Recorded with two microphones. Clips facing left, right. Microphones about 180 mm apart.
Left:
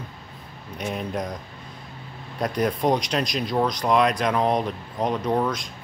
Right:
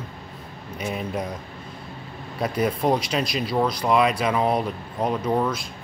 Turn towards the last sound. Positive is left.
turn(degrees=-5)  # may be behind; listen again after turning